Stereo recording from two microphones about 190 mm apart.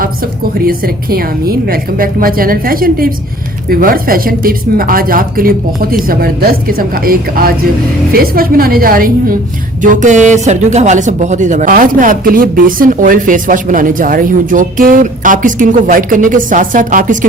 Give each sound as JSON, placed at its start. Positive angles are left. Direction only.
{"t": 0.6, "sound": "speech", "side_deg": -50}